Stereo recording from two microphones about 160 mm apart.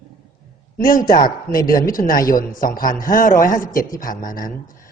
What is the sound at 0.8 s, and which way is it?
A man's voice, 60° left (ahead or behind).